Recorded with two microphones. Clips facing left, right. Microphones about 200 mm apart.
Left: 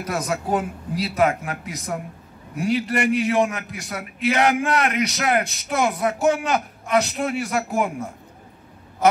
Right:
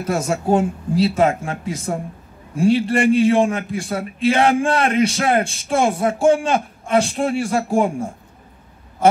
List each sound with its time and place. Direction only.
0.0 s a man's voice: 25° right (ahead or behind)
9.0 s quack: 30° right (ahead or behind)